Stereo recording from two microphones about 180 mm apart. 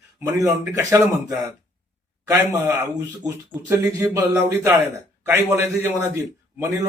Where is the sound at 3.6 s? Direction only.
10° right (ahead or behind).